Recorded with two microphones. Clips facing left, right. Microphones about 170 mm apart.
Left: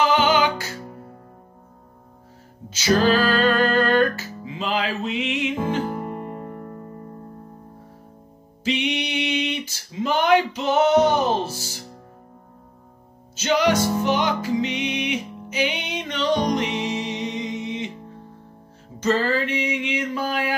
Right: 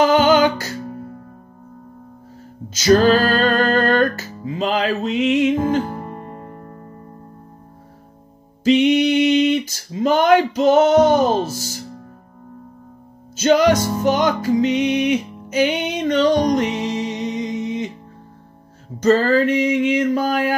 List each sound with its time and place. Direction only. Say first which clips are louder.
0.0 s music: right 5 dB; 45° right (ahead or behind)
2.7 s music: right 5 dB; 45° right (ahead or behind)
5.9 s music: left 2 dB; 15° left (ahead or behind)
8.6 s a sound: right 11 dB; 45° right (ahead or behind)
13.4 s music: right 5 dB; 45° right (ahead or behind)
18.9 s a sound: right 7 dB; 45° right (ahead or behind)